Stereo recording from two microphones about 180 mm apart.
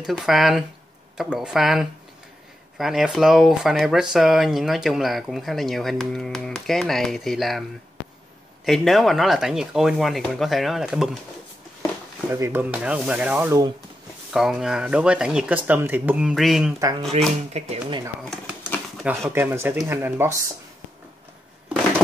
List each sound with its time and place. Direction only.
0.0 s speech: centre (ahead or behind)
8.6 s speech: centre (ahead or behind)
12.4 s speech: 10° right (ahead or behind)
14.3 s speech: centre (ahead or behind)
17.5 s speech: 35° right (ahead or behind)
18.3 s speech: 5° right (ahead or behind)